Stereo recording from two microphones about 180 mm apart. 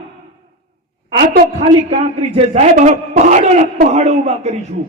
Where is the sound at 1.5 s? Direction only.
35° right (ahead or behind).